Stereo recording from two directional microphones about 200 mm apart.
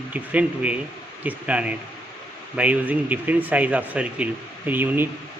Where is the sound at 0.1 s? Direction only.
5° right (ahead or behind).